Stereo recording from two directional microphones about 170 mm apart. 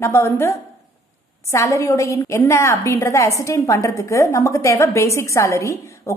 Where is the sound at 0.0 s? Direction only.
15° left (ahead or behind).